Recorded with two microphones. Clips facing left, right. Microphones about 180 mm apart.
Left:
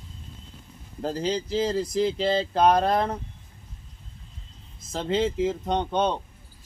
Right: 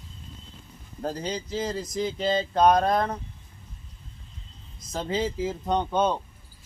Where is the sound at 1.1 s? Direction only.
30° left (ahead or behind).